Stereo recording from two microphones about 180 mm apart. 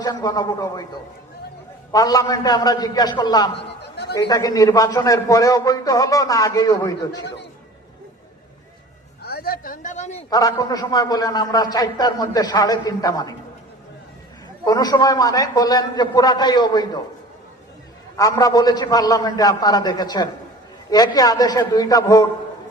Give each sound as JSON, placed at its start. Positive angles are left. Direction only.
{"t": 0.0, "sound": "a man's voice", "side_deg": 20}
{"t": 1.9, "sound": "a man's voice", "side_deg": 20}
{"t": 9.2, "sound": "a sound", "side_deg": 60}
{"t": 10.2, "sound": "a man's voice", "side_deg": 20}
{"t": 14.6, "sound": "a man's voice", "side_deg": 20}
{"t": 18.2, "sound": "a man's voice", "side_deg": 20}